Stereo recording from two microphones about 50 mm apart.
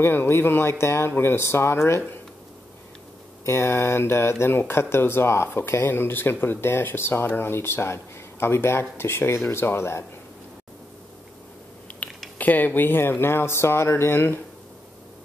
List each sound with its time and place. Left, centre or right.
0.0 s speech: left
3.4 s speech: left
12.0 s mechanisms: left
12.4 s speech: left